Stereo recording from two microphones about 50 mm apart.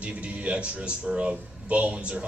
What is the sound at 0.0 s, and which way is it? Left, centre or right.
A man's voice, right.